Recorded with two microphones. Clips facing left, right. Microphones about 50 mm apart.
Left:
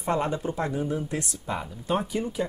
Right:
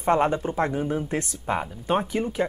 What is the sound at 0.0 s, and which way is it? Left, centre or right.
Speech, right.